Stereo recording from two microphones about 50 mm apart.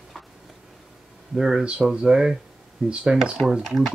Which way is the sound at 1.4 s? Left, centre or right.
Centre.